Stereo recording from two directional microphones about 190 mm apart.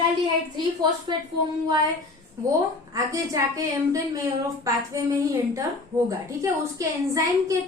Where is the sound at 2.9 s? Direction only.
15° right (ahead or behind).